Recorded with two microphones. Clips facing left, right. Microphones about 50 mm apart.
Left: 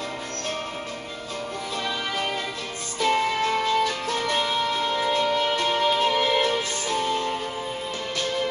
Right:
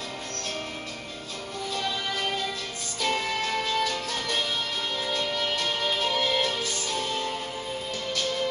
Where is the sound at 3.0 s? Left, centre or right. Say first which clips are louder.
Left 5 dB; left.